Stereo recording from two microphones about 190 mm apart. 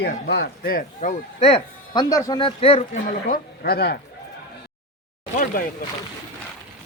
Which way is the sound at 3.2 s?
50° left (ahead or behind).